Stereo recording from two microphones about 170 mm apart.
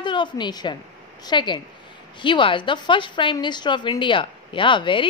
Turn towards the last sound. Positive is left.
turn(degrees=30)  # may be behind; listen again after turning